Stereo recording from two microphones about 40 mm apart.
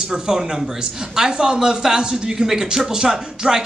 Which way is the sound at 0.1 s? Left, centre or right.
Centre.